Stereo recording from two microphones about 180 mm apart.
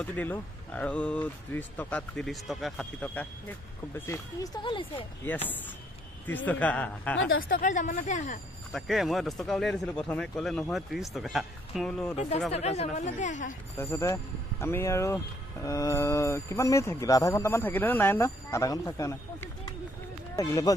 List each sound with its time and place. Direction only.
0.0 s speech: 10° left (ahead or behind)
4.6 s speech: 30° left (ahead or behind)
5.2 s speech: 10° left (ahead or behind)
7.2 s speech: 90° left
7.4 s speech: 45° left (ahead or behind)
8.7 s speech: centre (ahead or behind)
12.4 s speech: 35° left (ahead or behind)
13.7 s speech: 15° left (ahead or behind)